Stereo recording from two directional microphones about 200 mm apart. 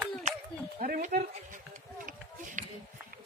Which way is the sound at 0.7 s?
40° right (ahead or behind).